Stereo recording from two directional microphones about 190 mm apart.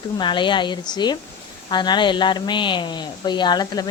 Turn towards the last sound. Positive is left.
turn(degrees=20)  # may be behind; listen again after turning